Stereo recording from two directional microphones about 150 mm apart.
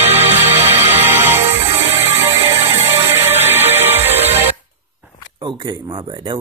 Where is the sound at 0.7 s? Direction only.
15° right (ahead or behind).